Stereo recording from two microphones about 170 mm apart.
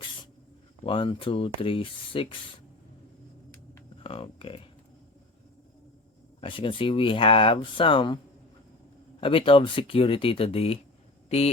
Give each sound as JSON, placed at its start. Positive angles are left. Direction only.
{"t": 0.9, "sound": "speech", "side_deg": 30}
{"t": 4.0, "sound": "speech", "side_deg": 30}
{"t": 6.4, "sound": "speech", "side_deg": 30}
{"t": 9.2, "sound": "speech", "side_deg": 30}